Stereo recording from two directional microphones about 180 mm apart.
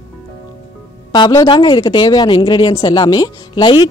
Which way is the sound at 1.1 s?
25° left (ahead or behind).